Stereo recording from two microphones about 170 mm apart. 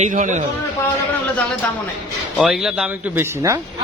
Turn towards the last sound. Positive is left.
turn(degrees=-15)  # may be behind; listen again after turning